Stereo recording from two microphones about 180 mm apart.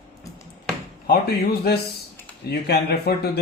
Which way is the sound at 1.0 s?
60° left (ahead or behind).